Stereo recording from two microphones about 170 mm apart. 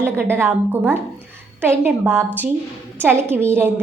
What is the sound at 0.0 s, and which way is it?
A woman's voice, 15° right (ahead or behind).